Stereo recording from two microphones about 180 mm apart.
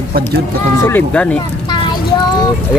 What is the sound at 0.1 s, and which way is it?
Speech, 60° right (ahead or behind).